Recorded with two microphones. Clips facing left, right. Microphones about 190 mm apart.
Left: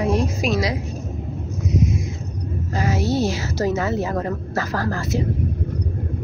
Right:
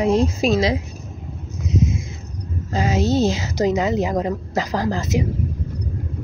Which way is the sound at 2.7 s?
20° right (ahead or behind).